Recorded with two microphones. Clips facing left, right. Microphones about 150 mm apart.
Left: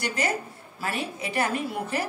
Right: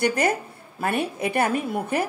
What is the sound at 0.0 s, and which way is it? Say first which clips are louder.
A woman's voice: right 6 dB; 55° right (ahead or behind).